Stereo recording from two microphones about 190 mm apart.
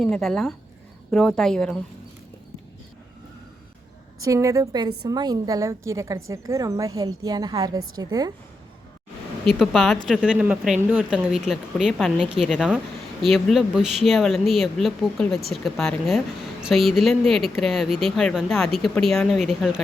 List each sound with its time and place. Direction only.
0.0 s speech: centre (ahead or behind)
4.2 s a woman's voice: 15° right (ahead or behind)
9.5 s speech: centre (ahead or behind)